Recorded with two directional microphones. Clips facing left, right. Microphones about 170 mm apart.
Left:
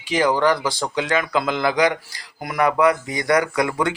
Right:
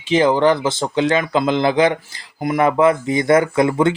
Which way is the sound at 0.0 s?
25° right (ahead or behind).